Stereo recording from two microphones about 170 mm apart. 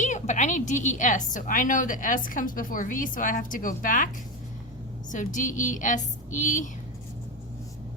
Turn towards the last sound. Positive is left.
turn(degrees=50)  # may be behind; listen again after turning